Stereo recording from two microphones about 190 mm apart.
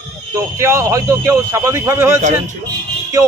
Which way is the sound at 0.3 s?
15° right (ahead or behind).